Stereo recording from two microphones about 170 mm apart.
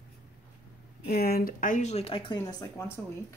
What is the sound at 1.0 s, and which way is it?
Speech, 60° left (ahead or behind).